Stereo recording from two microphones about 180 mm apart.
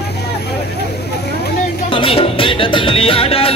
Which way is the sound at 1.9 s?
30° left (ahead or behind).